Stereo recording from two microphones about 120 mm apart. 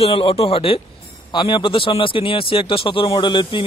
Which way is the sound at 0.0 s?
50° left (ahead or behind).